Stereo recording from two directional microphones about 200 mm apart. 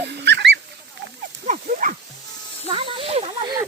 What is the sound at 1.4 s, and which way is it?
Dog, 40° right (ahead or behind).